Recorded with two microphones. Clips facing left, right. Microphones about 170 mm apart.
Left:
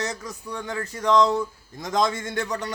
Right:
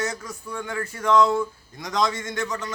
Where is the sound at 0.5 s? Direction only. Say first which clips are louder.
Right 1 dB; 20° left (ahead or behind).